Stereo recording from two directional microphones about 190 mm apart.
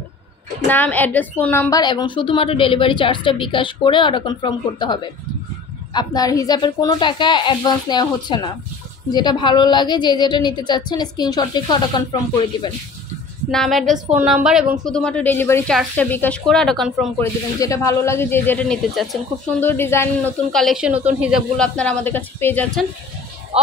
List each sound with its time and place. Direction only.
0.7 s a woman's voice: 10° left (ahead or behind)
5.9 s a woman's voice: 20° left (ahead or behind)
13.5 s speech: centre (ahead or behind)
17.2 s speech: 15° left (ahead or behind)
20.5 s speech: centre (ahead or behind)
21.5 s speech: 5° left (ahead or behind)
23.5 s speech: 30° right (ahead or behind)